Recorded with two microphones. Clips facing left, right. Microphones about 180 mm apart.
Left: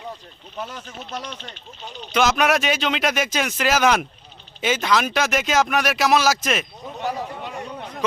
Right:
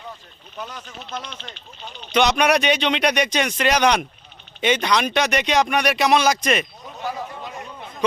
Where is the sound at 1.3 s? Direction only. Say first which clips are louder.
Left 2 dB; 45° left (ahead or behind).